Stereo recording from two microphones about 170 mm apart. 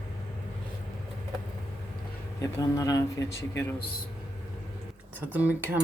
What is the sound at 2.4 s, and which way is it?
Speech, 20° left (ahead or behind).